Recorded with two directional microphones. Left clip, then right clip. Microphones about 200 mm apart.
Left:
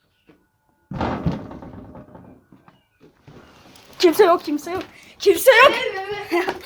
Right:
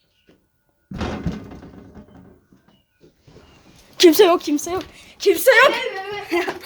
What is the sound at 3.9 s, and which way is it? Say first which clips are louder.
A woman's voice: right 2 dB; 35° right (ahead or behind).